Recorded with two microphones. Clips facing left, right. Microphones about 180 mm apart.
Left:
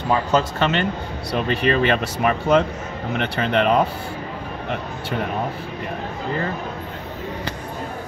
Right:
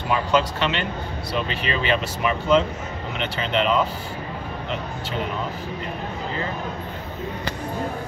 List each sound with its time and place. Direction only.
0.1 s speech: 45° left (ahead or behind)